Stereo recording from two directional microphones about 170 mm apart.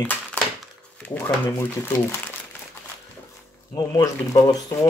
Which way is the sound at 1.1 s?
10° left (ahead or behind).